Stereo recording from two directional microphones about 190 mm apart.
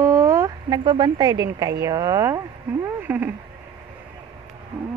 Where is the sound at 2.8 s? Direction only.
10° right (ahead or behind).